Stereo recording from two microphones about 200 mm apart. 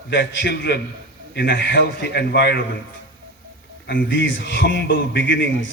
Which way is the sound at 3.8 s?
60° left (ahead or behind).